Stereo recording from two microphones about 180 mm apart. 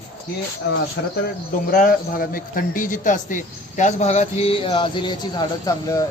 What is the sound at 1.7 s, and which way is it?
A man's voice, 50° left (ahead or behind).